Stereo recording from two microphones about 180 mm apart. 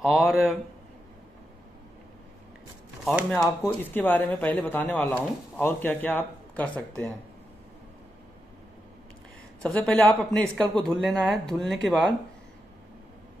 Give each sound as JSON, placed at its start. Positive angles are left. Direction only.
{"t": 0.0, "sound": "speech", "side_deg": 0}
{"t": 3.1, "sound": "speech", "side_deg": 0}
{"t": 3.3, "sound": "speech", "side_deg": 15}
{"t": 9.6, "sound": "speech", "side_deg": 5}